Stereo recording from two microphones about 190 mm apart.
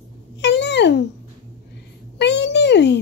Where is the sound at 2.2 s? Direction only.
65° left (ahead or behind).